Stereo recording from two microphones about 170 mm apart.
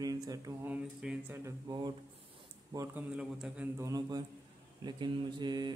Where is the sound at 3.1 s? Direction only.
5° right (ahead or behind).